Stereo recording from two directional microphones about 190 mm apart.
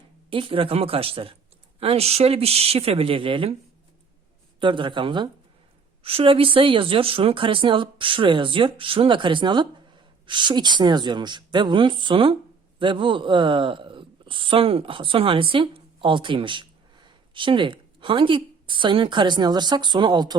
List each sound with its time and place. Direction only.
0.3 s speech: 25° right (ahead or behind)
4.6 s speech: 25° right (ahead or behind)